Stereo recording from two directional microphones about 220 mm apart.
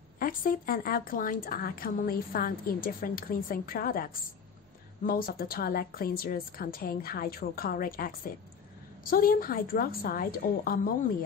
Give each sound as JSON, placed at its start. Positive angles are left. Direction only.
{"t": 0.2, "sound": "speech", "side_deg": 40}